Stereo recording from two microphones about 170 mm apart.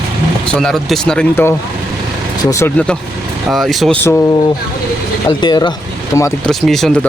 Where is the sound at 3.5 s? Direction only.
Centre (ahead or behind).